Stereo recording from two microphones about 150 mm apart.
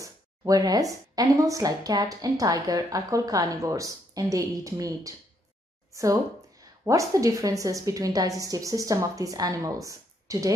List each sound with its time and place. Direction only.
0.0 s speech: 25° right (ahead or behind)
6.6 s speech: 20° right (ahead or behind)